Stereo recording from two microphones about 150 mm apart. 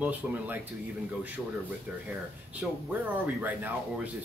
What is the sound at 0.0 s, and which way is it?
Speech, 10° right (ahead or behind).